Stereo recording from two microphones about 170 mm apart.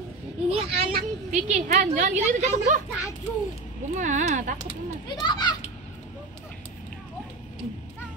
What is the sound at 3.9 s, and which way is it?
Speech, 50° right (ahead or behind).